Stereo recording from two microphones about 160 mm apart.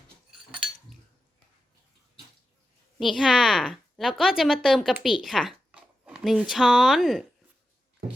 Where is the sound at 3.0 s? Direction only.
Centre (ahead or behind).